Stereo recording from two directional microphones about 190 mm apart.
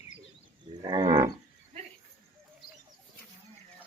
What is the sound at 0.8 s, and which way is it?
Cattle, 20° right (ahead or behind).